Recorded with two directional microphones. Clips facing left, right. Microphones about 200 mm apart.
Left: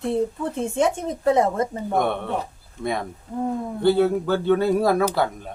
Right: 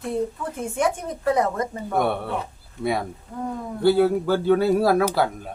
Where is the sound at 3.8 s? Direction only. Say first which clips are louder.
Right 1 dB; 5° right (ahead or behind).